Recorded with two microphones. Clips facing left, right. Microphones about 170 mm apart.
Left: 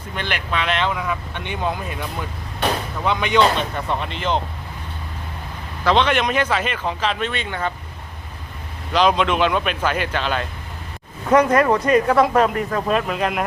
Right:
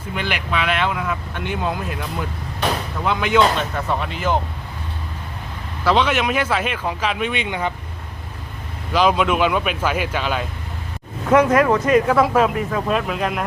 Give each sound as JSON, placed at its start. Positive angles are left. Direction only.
{"t": 0.2, "sound": "speech", "side_deg": -10}
{"t": 5.8, "sound": "speech", "side_deg": -5}
{"t": 8.9, "sound": "speech", "side_deg": -5}